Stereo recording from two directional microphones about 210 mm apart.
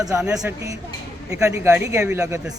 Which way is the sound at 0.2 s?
5° right (ahead or behind).